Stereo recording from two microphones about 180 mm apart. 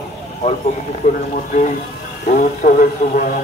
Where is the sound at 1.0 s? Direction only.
45° left (ahead or behind).